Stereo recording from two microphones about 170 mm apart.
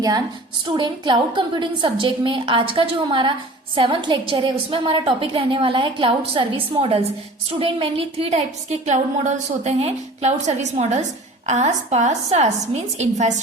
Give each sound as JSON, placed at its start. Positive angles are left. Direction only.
{"t": 0.8, "sound": "a woman's voice", "side_deg": -30}